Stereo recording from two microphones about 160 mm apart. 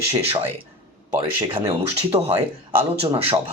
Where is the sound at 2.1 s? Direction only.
25° right (ahead or behind).